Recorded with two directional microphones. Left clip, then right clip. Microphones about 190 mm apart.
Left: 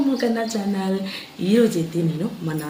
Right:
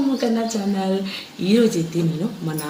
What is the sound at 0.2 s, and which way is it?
Speech, 10° left (ahead or behind).